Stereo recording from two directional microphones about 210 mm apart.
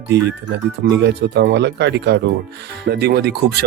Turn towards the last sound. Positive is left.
turn(degrees=-50)  # may be behind; listen again after turning